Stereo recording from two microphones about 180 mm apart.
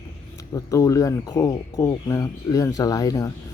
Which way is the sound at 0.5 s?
20° left (ahead or behind).